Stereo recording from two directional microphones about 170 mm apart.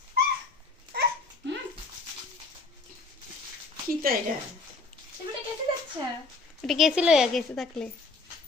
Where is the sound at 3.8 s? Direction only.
55° right (ahead or behind).